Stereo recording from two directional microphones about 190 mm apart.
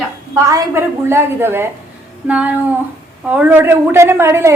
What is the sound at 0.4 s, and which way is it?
A woman's voice, 15° right (ahead or behind).